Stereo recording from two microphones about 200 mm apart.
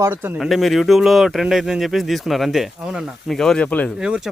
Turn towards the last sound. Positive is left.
turn(degrees=5)  # may be behind; listen again after turning